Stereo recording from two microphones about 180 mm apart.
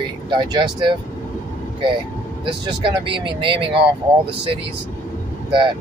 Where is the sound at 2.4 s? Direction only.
25° right (ahead or behind).